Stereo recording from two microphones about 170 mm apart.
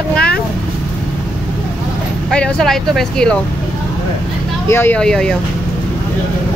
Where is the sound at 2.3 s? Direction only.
5° left (ahead or behind).